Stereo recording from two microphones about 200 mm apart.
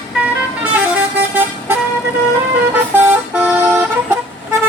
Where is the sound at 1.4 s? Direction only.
10° right (ahead or behind).